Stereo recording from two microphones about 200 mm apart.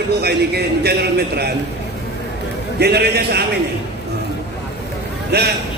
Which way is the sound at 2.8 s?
55° right (ahead or behind).